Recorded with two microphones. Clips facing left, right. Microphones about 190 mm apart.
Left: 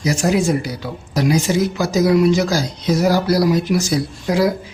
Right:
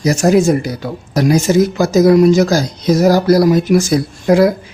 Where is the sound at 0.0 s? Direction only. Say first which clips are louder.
Right 6 dB; 45° right (ahead or behind).